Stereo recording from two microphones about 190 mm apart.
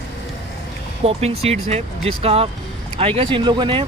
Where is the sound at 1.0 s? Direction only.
35° right (ahead or behind).